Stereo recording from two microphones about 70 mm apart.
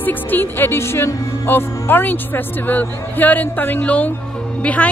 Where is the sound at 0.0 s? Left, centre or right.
Left.